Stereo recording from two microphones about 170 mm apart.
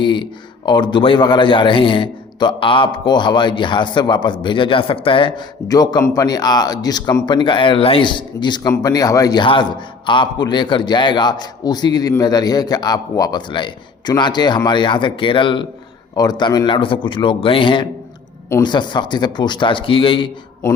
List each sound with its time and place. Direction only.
0.0 s a man's voice: 30° left (ahead or behind)